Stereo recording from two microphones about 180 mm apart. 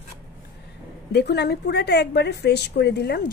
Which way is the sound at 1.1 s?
65° left (ahead or behind).